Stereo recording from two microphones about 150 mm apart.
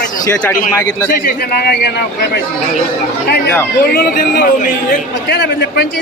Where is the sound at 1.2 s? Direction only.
90° left.